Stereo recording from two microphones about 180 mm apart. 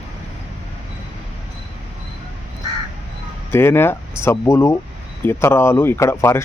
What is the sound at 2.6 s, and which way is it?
Crow, 20° right (ahead or behind).